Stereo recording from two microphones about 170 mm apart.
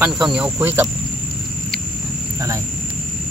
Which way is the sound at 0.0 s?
5° right (ahead or behind).